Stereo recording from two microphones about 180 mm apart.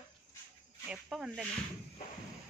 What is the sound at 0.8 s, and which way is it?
Snake, 5° right (ahead or behind).